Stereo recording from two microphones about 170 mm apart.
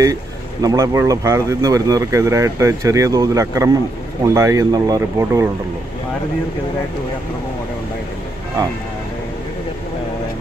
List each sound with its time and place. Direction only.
0.0 s speech: 20° right (ahead or behind)